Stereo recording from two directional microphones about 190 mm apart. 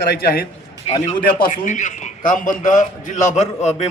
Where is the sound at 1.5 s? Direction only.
40° left (ahead or behind).